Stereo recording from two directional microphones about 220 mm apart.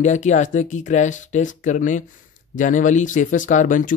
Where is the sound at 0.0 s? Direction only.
35° left (ahead or behind).